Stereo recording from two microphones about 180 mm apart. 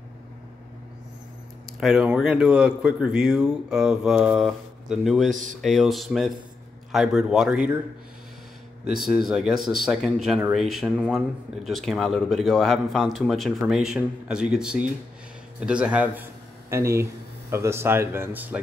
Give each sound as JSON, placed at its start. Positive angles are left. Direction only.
{"t": 1.8, "sound": "speech", "side_deg": -5}
{"t": 5.3, "sound": "speech", "side_deg": -45}
{"t": 5.6, "sound": "speech", "side_deg": 0}
{"t": 8.8, "sound": "speech", "side_deg": -5}